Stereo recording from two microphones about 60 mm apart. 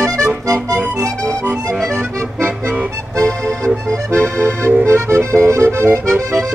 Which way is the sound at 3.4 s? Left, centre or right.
Right.